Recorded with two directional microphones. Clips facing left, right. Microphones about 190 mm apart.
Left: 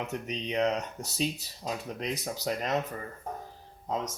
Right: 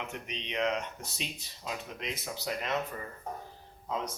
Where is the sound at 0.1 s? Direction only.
40° left (ahead or behind).